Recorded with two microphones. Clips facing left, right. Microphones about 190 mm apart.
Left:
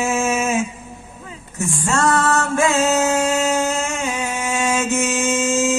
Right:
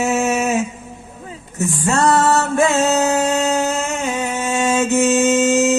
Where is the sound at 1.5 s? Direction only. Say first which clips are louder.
Right 3 dB; 20° right (ahead or behind).